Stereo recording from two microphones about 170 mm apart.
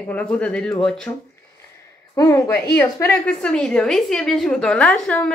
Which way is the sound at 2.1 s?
20° left (ahead or behind).